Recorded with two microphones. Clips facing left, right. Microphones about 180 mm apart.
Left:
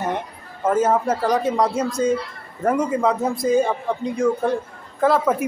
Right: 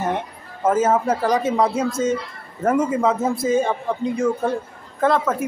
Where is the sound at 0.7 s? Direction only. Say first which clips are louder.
Right 1 dB; 5° right (ahead or behind).